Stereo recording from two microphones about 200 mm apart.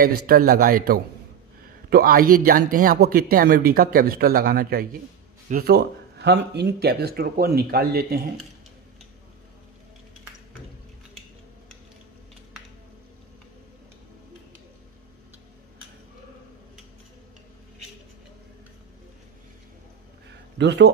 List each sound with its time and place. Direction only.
0.3 s speech: 45° right (ahead or behind)
20.5 s speech: 55° right (ahead or behind)